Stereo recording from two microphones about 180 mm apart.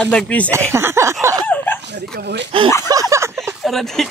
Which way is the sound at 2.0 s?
70° right (ahead or behind).